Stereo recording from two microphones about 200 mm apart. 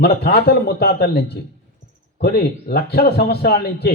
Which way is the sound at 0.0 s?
55° left (ahead or behind).